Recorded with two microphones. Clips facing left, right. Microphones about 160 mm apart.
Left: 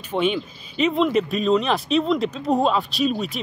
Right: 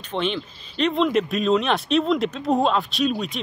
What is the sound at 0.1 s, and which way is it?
Speech, 10° left (ahead or behind).